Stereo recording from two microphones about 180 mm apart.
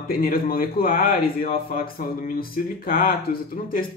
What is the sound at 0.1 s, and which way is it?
A man's voice, 55° left (ahead or behind).